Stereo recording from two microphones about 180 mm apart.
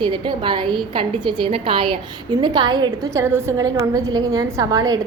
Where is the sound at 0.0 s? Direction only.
25° right (ahead or behind).